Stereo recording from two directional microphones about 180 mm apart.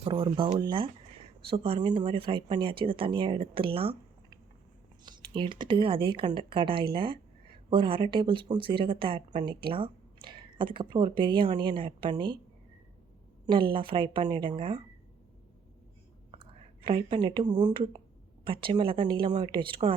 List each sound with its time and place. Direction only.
0.0 s speech: 30° right (ahead or behind)
13.7 s speech: 30° right (ahead or behind)
16.3 s speech: 30° right (ahead or behind)